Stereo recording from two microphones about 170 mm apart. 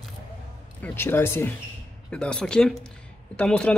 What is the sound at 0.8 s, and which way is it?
Speech, 15° left (ahead or behind).